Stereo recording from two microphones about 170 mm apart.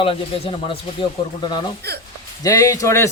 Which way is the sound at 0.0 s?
30° left (ahead or behind).